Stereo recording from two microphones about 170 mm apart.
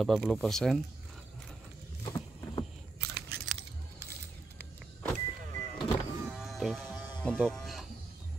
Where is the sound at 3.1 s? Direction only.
65° right (ahead or behind).